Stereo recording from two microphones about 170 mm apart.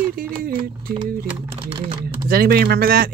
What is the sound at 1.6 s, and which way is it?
Speech, 30° right (ahead or behind).